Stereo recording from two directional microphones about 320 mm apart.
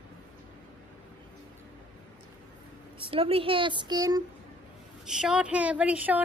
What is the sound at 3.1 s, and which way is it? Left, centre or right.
A woman's voice, centre.